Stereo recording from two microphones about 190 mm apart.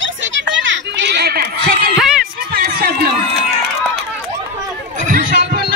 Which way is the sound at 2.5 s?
50° right (ahead or behind).